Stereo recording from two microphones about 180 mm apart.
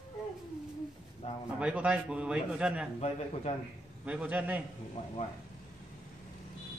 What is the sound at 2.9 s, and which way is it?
Speech, 35° left (ahead or behind).